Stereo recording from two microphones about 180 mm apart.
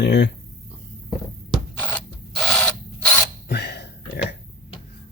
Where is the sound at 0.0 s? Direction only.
70° left (ahead or behind).